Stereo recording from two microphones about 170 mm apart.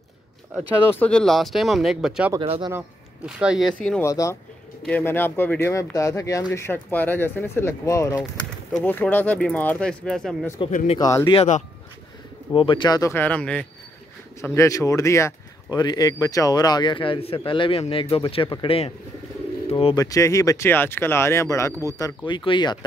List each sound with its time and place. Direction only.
0.8 s speech: 10° left (ahead or behind)
2.4 s speech: 35° right (ahead or behind)
3.3 s speech: 5° right (ahead or behind)
4.0 s speech: 15° left (ahead or behind)
8.7 s speech: 5° left (ahead or behind)
10.7 s speech: 50° left (ahead or behind)
11.0 s speech: 20° left (ahead or behind)
11.3 s speech: 45° left (ahead or behind)
12.5 s speech: 30° left (ahead or behind)
20.0 s speech: 20° left (ahead or behind)